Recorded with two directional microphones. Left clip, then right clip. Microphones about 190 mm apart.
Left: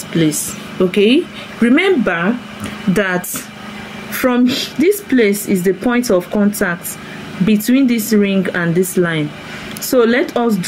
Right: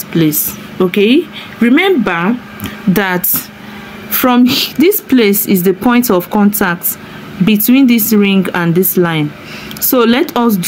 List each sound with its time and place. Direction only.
0.2 s speech: 35° right (ahead or behind)
2.9 s a woman's voice: 45° right (ahead or behind)